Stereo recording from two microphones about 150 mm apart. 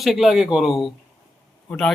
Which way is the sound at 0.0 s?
Centre (ahead or behind).